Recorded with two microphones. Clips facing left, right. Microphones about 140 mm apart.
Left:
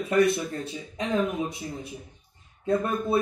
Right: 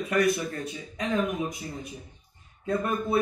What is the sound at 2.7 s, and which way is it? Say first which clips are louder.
Speech: left 2 dB; 30° left (ahead or behind).